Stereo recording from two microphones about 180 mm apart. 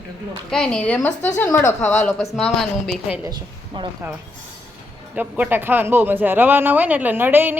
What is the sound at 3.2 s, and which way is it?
Speech, 25° right (ahead or behind).